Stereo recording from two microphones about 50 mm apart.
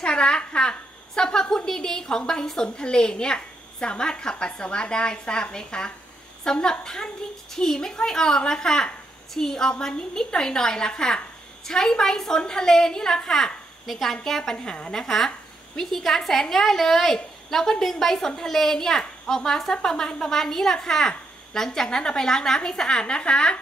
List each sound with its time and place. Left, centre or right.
0.0 s a woman's voice: centre